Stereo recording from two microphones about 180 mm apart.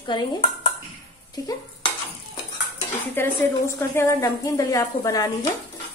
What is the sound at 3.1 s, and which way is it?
A woman's voice, 10° left (ahead or behind).